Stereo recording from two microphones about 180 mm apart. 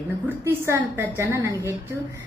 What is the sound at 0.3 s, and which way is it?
A woman's voice, 15° right (ahead or behind).